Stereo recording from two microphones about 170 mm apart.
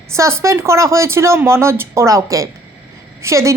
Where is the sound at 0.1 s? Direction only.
15° right (ahead or behind).